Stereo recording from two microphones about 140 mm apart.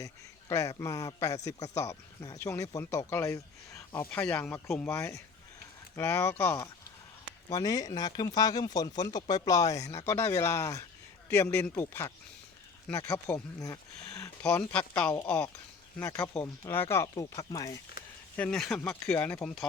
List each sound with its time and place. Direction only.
0.0 s speech: 25° left (ahead or behind)
13.1 s speech: 20° left (ahead or behind)
14.4 s speech: 10° left (ahead or behind); by 17.7 s 25° left (ahead or behind)
18.0 s a sound: 90° left
18.3 s speech: 5° left (ahead or behind)